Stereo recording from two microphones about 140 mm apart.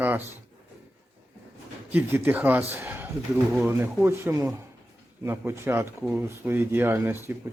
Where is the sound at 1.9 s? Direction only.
15° right (ahead or behind).